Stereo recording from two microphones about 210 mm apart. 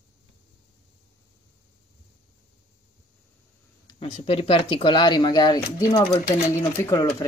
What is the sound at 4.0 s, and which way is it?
Speech, 30° left (ahead or behind).